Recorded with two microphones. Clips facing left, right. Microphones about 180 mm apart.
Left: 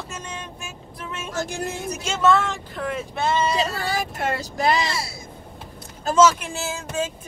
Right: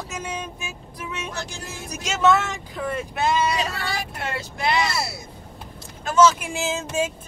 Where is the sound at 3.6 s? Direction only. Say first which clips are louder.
Left 3 dB; 40° left (ahead or behind).